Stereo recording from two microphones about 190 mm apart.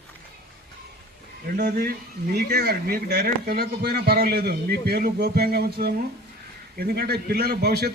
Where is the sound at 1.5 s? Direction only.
55° right (ahead or behind).